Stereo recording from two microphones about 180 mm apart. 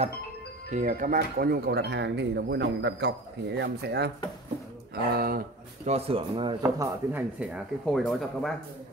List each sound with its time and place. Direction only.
0.7 s speech: 45° right (ahead or behind)
5.9 s speech: 35° right (ahead or behind)
6.6 s speech: 15° right (ahead or behind); by 8.5 s centre (ahead or behind)